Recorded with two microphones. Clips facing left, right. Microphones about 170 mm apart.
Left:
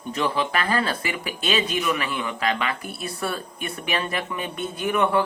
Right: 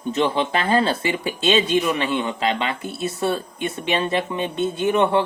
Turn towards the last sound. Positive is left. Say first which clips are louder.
# right 3 dB
turn(degrees=-25)  # may be behind; listen again after turning